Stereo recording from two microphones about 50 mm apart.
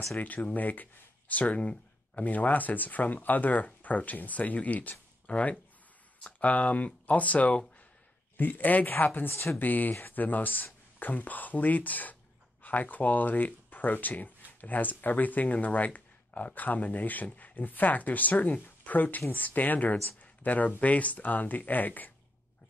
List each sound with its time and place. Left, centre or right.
0.2 s speech: left
8.4 s speech: left
9.3 s a woman's voice: left
9.6 s speech: left
20.2 s a sound: left
20.8 s speech: left